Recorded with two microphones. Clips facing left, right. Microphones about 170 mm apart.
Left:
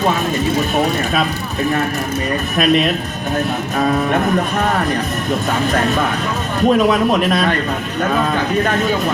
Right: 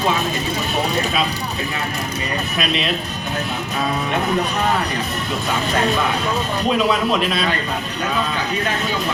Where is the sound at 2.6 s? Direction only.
50° left (ahead or behind).